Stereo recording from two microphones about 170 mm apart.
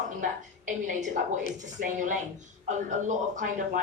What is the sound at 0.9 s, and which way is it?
Speech, 45° right (ahead or behind).